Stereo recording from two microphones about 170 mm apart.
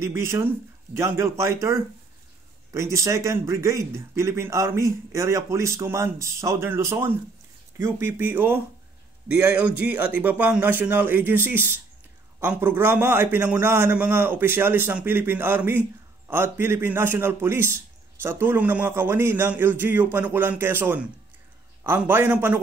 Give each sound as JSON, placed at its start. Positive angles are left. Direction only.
{"t": 0.0, "sound": "speech", "side_deg": -15}